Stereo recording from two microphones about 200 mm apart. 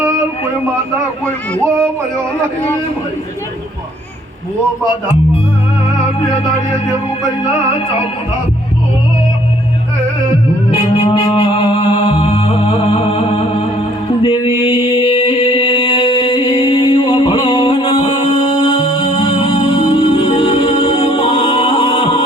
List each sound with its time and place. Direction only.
10.7 s music: 20° left (ahead or behind)
14.2 s mantra: 25° left (ahead or behind)
19.2 s music: 25° left (ahead or behind)